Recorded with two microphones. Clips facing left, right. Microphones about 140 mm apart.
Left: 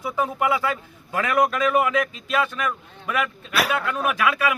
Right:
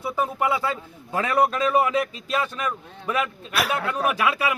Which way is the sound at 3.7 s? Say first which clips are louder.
Even; 35° right (ahead or behind).